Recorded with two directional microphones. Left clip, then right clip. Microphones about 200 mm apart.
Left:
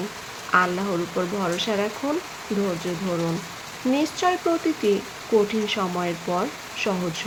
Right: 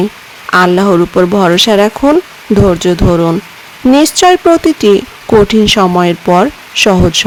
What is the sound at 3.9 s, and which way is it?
Speech, 60° right (ahead or behind).